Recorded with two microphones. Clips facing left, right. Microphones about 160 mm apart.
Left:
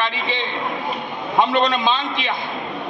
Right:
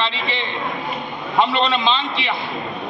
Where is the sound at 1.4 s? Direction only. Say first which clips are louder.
Left 1 dB; 15° left (ahead or behind).